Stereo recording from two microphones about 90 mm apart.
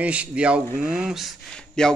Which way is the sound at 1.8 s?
5° left (ahead or behind).